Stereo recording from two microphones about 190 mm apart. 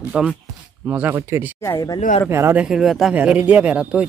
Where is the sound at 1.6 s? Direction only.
15° left (ahead or behind).